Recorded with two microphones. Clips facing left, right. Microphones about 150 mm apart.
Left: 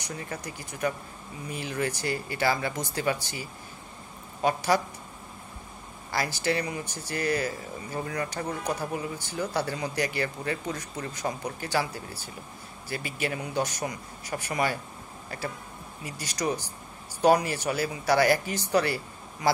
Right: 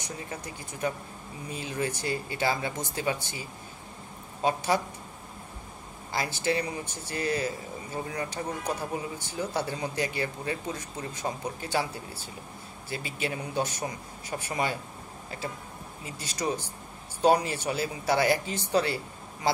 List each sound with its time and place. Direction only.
0.0 s speech: 25° right (ahead or behind)
4.5 s speech: 25° right (ahead or behind)
6.1 s speech: 25° right (ahead or behind)
16.1 s speech: 25° right (ahead or behind)